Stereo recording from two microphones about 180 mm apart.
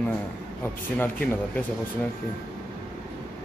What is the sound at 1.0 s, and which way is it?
Speech, 10° left (ahead or behind).